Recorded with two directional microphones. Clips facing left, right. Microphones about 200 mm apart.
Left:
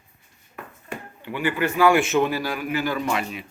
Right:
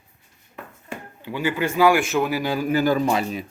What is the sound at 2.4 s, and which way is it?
A man's voice, 30° right (ahead or behind).